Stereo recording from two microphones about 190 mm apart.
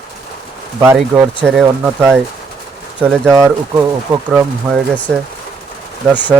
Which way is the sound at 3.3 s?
15° right (ahead or behind).